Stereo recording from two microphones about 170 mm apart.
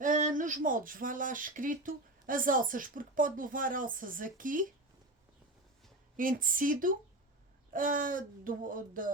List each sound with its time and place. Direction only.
0.0 s speech: 50° right (ahead or behind)
6.1 s speech: 55° right (ahead or behind)